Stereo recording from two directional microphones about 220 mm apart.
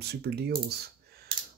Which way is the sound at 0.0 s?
45° right (ahead or behind).